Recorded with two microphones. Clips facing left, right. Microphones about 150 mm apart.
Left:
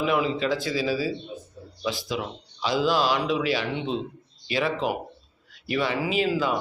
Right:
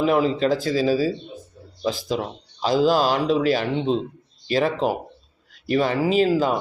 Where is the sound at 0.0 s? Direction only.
40° right (ahead or behind).